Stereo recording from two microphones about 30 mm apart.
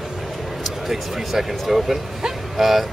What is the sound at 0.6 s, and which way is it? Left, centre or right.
Speech, centre.